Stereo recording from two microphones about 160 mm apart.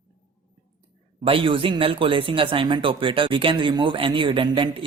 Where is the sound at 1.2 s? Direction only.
35° right (ahead or behind).